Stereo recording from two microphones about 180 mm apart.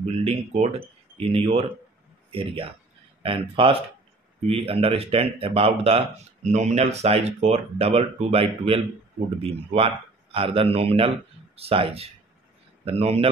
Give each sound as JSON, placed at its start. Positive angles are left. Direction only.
{"t": 0.0, "sound": "speech", "side_deg": -35}